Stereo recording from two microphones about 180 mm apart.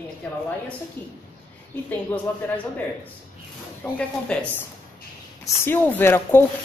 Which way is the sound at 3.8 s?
5° left (ahead or behind).